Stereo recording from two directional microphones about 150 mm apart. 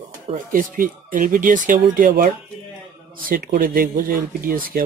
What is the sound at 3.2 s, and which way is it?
Speech, 80° right.